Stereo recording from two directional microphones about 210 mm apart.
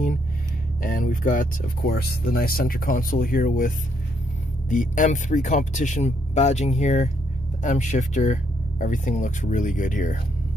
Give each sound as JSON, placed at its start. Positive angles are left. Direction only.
{"t": 0.8, "sound": "speech", "side_deg": 40}